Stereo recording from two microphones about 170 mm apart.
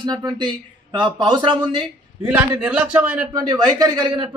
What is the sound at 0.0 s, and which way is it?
A man's voice, 25° right (ahead or behind).